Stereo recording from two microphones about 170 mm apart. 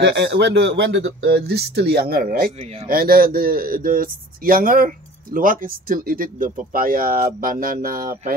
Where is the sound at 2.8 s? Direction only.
60° right (ahead or behind).